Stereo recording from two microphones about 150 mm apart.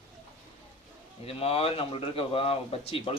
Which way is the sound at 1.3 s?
40° left (ahead or behind).